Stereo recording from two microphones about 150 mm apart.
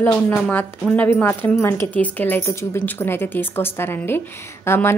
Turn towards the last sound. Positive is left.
turn(degrees=15)  # may be behind; listen again after turning